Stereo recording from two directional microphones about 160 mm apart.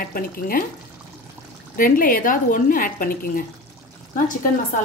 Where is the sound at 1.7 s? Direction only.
60° left (ahead or behind).